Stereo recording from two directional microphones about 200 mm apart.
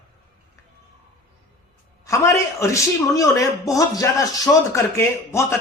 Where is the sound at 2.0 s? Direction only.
15° left (ahead or behind).